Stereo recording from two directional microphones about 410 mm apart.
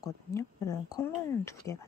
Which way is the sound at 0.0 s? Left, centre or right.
Centre.